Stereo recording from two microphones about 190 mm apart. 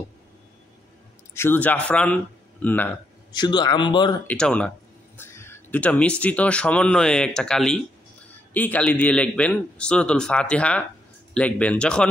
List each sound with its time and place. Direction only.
1.3 s speech: 10° left (ahead or behind)
3.3 s speech: 20° left (ahead or behind)
4.3 s a man's voice: 5° left (ahead or behind)